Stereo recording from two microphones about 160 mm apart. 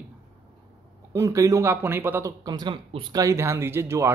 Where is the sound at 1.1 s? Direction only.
20° right (ahead or behind).